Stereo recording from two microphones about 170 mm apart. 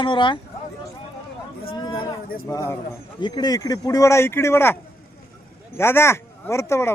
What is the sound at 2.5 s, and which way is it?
Speech, 20° left (ahead or behind).